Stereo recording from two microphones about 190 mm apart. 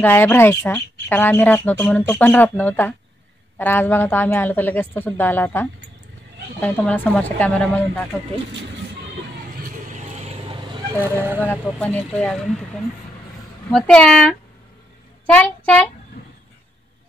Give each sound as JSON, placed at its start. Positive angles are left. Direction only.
{"t": 0.0, "sound": "a woman's voice", "side_deg": 10}
{"t": 9.7, "sound": "vehicle", "side_deg": -35}
{"t": 11.0, "sound": "speech", "side_deg": -10}
{"t": 11.4, "sound": "speech", "side_deg": 5}